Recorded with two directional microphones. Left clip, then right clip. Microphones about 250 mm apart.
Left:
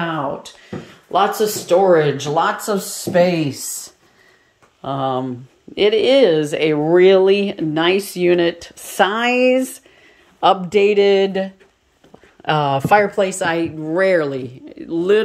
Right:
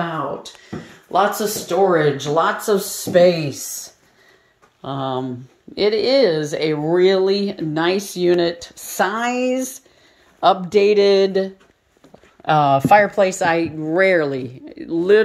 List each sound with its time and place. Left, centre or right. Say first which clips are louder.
1.7 s speech: left 3 dB; centre
4.8 s speech: left 3 dB; centre